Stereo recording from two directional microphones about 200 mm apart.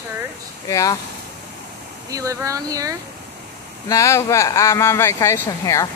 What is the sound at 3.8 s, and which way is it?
Speech, 15° left (ahead or behind).